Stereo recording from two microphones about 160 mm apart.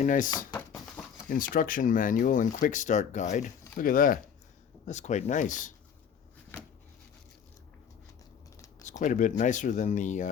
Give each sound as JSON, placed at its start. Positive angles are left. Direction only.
{"t": 0.0, "sound": "speech", "side_deg": 55}
{"t": 0.5, "sound": "a sound", "side_deg": 10}
{"t": 1.3, "sound": "speech", "side_deg": 60}
{"t": 3.8, "sound": "speech", "side_deg": 60}
{"t": 4.9, "sound": "speech", "side_deg": 45}
{"t": 8.8, "sound": "speech", "side_deg": 50}